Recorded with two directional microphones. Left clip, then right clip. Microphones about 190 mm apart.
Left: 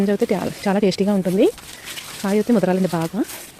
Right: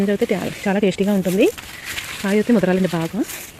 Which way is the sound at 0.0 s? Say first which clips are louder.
Even; 10° left (ahead or behind).